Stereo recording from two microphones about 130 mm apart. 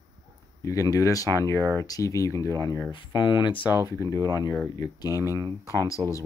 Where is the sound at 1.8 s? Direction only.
25° left (ahead or behind).